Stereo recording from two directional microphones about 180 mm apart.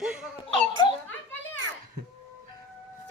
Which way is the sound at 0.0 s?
5° right (ahead or behind).